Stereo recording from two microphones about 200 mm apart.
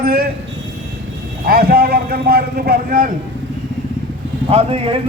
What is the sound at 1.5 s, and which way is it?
Speech, 50° right (ahead or behind).